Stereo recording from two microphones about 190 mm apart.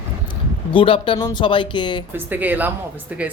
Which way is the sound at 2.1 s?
10° right (ahead or behind).